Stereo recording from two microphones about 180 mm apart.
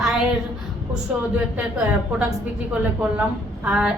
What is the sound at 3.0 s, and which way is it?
Speech, 5° right (ahead or behind).